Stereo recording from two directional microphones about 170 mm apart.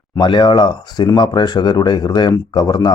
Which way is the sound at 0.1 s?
25° left (ahead or behind).